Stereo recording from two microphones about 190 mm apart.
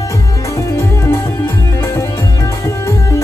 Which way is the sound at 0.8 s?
10° left (ahead or behind).